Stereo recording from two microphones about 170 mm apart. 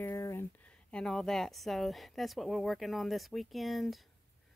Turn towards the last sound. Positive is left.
turn(degrees=0)  # may be behind; listen again after turning